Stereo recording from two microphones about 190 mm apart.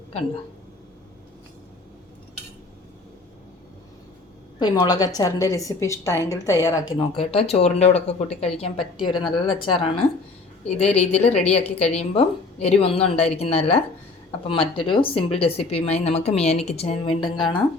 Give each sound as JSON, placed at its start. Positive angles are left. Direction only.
{"t": 4.6, "sound": "a woman's voice", "side_deg": 20}